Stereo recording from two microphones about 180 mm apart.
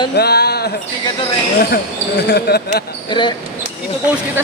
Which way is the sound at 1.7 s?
65° left (ahead or behind).